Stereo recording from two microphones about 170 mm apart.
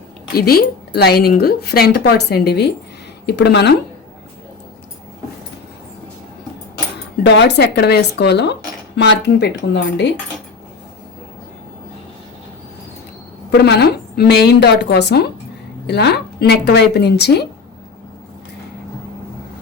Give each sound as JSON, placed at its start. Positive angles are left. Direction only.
{"t": 0.3, "sound": "a woman's voice", "side_deg": 65}
{"t": 7.2, "sound": "speech", "side_deg": 90}
{"t": 13.6, "sound": "a woman's voice", "side_deg": 75}